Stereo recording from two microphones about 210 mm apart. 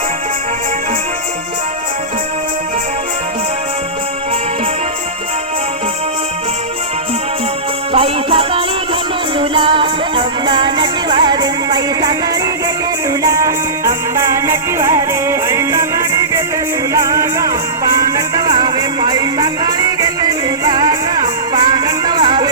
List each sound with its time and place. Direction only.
7.9 s music: 25° right (ahead or behind)
13.2 s music: 15° right (ahead or behind)